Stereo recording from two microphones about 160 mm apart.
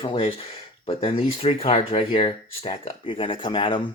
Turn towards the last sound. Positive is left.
turn(degrees=35)  # may be behind; listen again after turning